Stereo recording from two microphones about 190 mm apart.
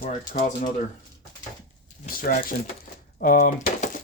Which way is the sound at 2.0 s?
50° left (ahead or behind).